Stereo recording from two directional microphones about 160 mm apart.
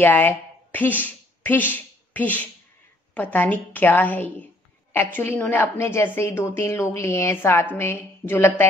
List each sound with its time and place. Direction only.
0.0 s a woman's voice: 10° left (ahead or behind)